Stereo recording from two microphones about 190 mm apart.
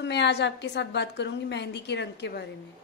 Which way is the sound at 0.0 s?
65° left (ahead or behind).